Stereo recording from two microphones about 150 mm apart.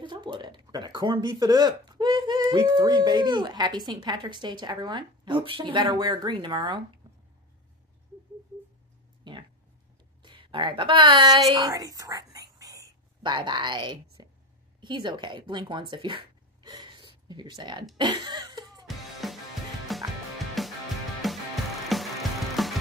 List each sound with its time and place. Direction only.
0.0 s speech: 30° right (ahead or behind)
10.2 s speech: 35° right (ahead or behind)
14.2 s a sound: 25° right (ahead or behind)
14.8 s speech: 30° right (ahead or behind)
17.9 s a sound: 30° right (ahead or behind)
19.2 s music: centre (ahead or behind)